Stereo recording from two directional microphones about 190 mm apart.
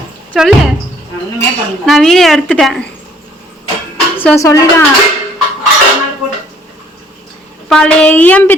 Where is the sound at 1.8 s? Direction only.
Centre (ahead or behind).